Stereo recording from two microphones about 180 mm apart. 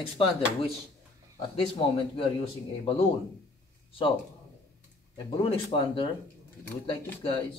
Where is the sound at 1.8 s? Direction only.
30° left (ahead or behind).